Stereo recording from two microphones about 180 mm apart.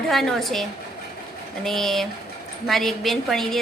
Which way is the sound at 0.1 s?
Centre (ahead or behind).